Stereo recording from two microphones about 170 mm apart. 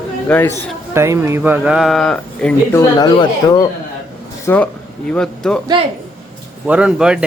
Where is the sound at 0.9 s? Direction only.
15° right (ahead or behind); by 2.8 s 5° left (ahead or behind).